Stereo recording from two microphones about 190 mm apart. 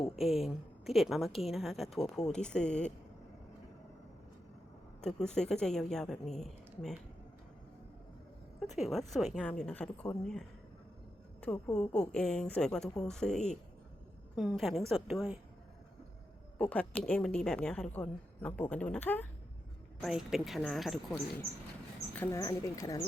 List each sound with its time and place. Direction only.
0.2 s a woman's voice: centre (ahead or behind)
5.0 s a woman's voice: 5° left (ahead or behind)
8.6 s a woman's voice: centre (ahead or behind)
11.3 s a woman's voice: 10° left (ahead or behind)
16.6 s a woman's voice: 5° left (ahead or behind)
20.0 s a woman's voice: centre (ahead or behind)
22.1 s speech: 15° left (ahead or behind)